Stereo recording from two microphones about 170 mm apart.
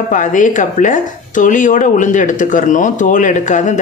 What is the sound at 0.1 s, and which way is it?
Speech, 50° left (ahead or behind).